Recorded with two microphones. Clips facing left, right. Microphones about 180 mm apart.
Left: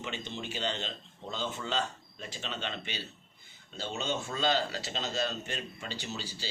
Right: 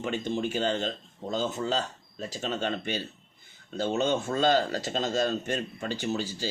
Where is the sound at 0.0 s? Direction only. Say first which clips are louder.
Right 10 dB; 45° right (ahead or behind).